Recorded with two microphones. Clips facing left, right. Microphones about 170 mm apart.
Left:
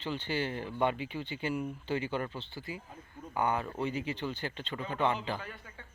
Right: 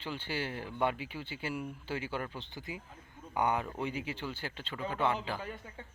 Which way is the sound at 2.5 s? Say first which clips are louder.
Left 2 dB; 20° right (ahead or behind).